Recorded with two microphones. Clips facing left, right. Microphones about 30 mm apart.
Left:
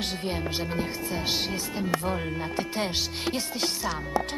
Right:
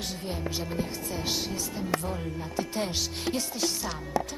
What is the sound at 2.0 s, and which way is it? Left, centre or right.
Speech, left.